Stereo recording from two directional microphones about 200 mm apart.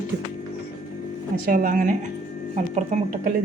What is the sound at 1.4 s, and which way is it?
Speech, 45° right (ahead or behind).